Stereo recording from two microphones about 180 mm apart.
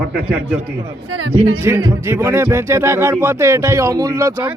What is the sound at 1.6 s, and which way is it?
Speech, 15° right (ahead or behind).